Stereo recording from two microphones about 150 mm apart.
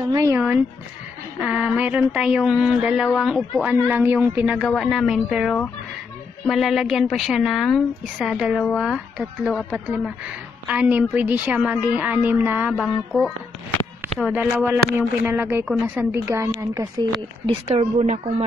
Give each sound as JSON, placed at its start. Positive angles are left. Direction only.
{"t": 0.1, "sound": "speech", "side_deg": -20}
{"t": 1.4, "sound": "a woman's voice", "side_deg": -10}
{"t": 17.0, "sound": "speech", "side_deg": -30}
{"t": 17.5, "sound": "a woman's voice", "side_deg": -45}